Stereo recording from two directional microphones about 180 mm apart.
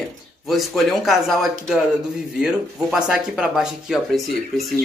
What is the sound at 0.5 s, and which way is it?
Speech, centre (ahead or behind).